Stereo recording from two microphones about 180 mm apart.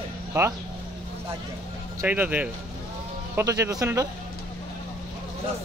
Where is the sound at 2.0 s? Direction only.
10° right (ahead or behind).